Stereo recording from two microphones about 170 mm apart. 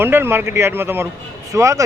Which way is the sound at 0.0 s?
15° right (ahead or behind).